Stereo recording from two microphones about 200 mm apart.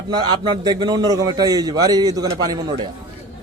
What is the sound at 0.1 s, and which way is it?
A man's voice, 20° right (ahead or behind).